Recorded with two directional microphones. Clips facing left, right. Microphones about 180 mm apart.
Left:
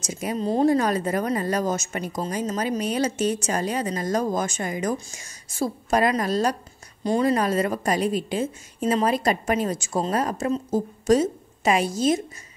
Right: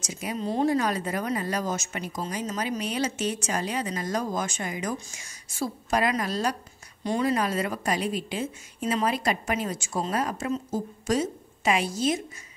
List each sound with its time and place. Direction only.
0.0 s a woman's voice: 45° left (ahead or behind)